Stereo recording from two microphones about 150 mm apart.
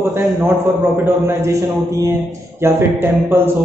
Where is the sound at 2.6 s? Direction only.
15° right (ahead or behind).